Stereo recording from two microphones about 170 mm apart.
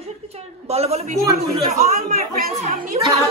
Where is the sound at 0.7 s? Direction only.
40° right (ahead or behind).